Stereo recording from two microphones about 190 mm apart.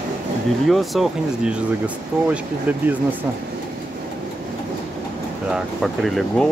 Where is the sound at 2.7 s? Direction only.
10° right (ahead or behind).